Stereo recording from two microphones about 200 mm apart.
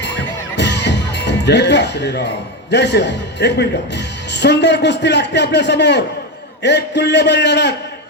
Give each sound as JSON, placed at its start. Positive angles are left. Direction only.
{"t": 0.0, "sound": "a man's voice", "side_deg": 60}